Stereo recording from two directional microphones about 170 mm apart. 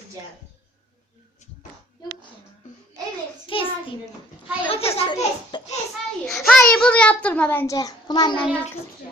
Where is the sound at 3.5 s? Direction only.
30° left (ahead or behind).